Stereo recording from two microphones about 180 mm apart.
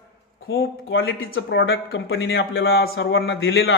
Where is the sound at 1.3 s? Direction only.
60° left (ahead or behind).